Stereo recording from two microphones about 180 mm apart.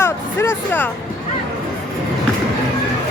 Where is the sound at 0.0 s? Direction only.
10° left (ahead or behind).